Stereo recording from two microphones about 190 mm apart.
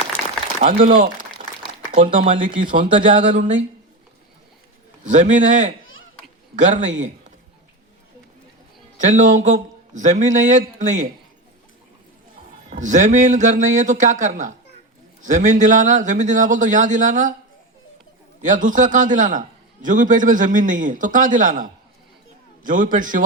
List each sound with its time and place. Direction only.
0.8 s speech: 30° right (ahead or behind)
1.4 s crumpling: 35° right (ahead or behind)
2.0 s speech: 25° right (ahead or behind)
2.6 s a man's voice: 45° right (ahead or behind)
5.0 s a man's voice: 40° right (ahead or behind)
9.0 s a man's voice: 40° right (ahead or behind)
12.7 s a man's voice: 40° right (ahead or behind)
18.4 s a man's voice: 45° right (ahead or behind)